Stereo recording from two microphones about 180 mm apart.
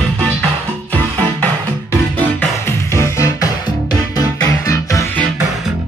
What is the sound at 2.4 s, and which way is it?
Music, 15° left (ahead or behind).